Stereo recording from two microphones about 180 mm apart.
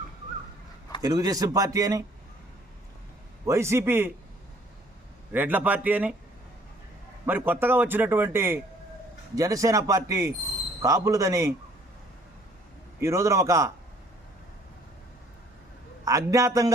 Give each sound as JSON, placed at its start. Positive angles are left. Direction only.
{"t": 1.0, "sound": "speech", "side_deg": -20}
{"t": 3.4, "sound": "a man's voice", "side_deg": -15}
{"t": 5.3, "sound": "a man's voice", "side_deg": -10}
{"t": 7.3, "sound": "a man's voice", "side_deg": -10}
{"t": 13.0, "sound": "a man's voice", "side_deg": -15}
{"t": 16.0, "sound": "a man's voice", "side_deg": -20}